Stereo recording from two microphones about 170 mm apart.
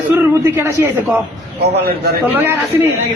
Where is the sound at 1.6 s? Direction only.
75° right (ahead or behind).